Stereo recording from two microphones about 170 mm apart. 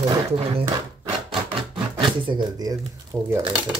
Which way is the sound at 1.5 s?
30° right (ahead or behind).